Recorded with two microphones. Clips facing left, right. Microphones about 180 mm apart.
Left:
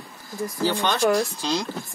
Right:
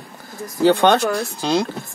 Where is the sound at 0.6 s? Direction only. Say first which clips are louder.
Right 7 dB; 65° right (ahead or behind).